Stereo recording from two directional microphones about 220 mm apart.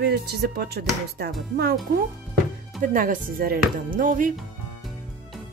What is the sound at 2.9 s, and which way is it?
Speech, 40° right (ahead or behind).